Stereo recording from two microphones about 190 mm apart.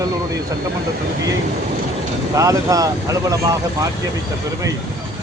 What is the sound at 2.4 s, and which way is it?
Speech, 15° right (ahead or behind).